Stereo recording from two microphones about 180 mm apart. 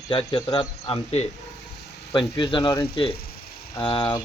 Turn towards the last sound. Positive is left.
turn(degrees=30)  # may be behind; listen again after turning